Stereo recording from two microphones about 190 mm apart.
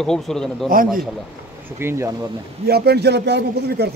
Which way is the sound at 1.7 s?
15° right (ahead or behind).